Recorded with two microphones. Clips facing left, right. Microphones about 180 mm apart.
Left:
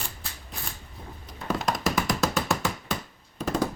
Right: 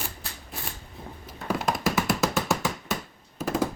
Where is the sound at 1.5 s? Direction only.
10° right (ahead or behind).